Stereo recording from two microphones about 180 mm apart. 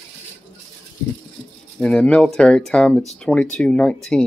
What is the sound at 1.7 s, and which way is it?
Speech, 5° left (ahead or behind).